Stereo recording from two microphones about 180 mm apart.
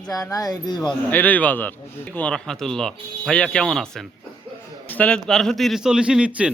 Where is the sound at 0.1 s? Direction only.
20° left (ahead or behind).